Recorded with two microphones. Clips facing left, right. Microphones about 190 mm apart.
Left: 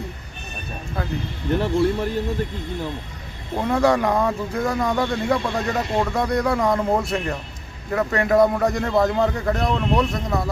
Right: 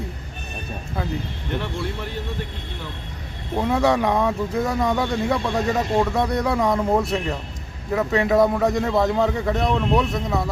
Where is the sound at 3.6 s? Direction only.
Centre (ahead or behind).